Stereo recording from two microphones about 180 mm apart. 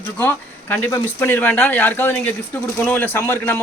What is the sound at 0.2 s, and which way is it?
A man's voice, 10° left (ahead or behind).